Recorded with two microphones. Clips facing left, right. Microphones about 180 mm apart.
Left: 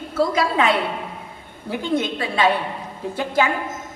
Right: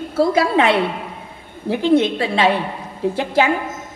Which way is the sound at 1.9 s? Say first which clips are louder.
Right 8 dB; 30° right (ahead or behind).